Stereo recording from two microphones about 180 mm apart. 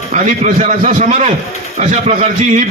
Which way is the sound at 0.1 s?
45° right (ahead or behind).